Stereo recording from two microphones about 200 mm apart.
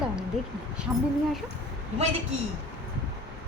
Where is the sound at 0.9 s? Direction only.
5° right (ahead or behind).